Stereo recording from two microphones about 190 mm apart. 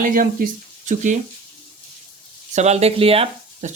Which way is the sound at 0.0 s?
50° right (ahead or behind).